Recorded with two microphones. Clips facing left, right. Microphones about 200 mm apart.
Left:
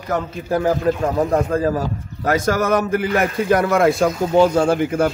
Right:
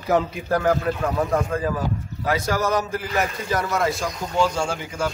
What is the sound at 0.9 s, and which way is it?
A man's voice, 35° left (ahead or behind).